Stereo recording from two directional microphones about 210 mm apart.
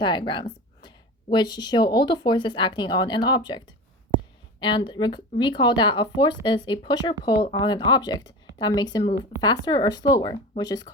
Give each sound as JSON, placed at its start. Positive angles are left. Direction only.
{"t": 0.0, "sound": "a woman's voice", "side_deg": 20}
{"t": 4.6, "sound": "speech", "side_deg": 20}